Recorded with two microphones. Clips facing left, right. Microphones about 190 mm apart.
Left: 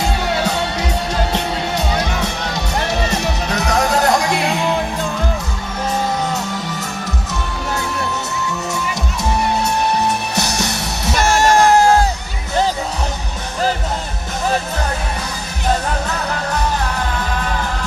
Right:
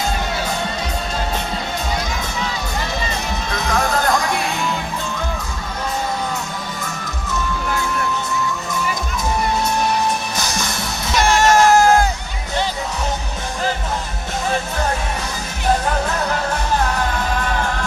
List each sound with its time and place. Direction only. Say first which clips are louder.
2.0 s music: left 3 dB; 70° left (ahead or behind)
10.3 s music: left 4 dB; 70° left (ahead or behind)
11.3 s music: left 1 dB; 35° left (ahead or behind)